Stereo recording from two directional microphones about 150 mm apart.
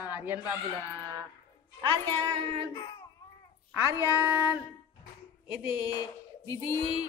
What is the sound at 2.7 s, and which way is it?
Speech, 30° left (ahead or behind).